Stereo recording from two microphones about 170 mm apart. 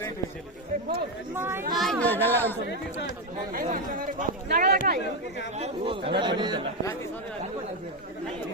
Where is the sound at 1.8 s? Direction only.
5° left (ahead or behind).